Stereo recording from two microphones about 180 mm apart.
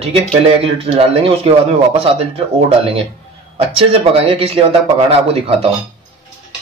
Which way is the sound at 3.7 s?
30° right (ahead or behind).